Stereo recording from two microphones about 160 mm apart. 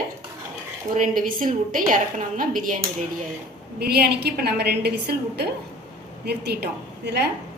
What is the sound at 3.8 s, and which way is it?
A woman's voice, 85° right.